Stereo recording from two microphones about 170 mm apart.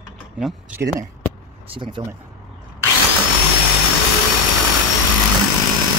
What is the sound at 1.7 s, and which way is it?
Speech, 25° right (ahead or behind).